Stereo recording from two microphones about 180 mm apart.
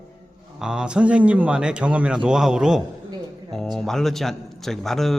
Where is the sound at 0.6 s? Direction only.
5° right (ahead or behind).